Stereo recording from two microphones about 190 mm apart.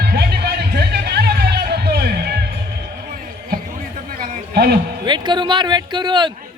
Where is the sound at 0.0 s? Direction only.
60° right (ahead or behind).